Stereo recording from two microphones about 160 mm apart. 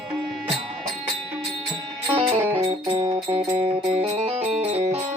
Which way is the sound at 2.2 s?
35° right (ahead or behind).